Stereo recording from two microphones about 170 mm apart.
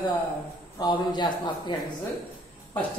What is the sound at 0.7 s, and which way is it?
A man's voice, 25° left (ahead or behind).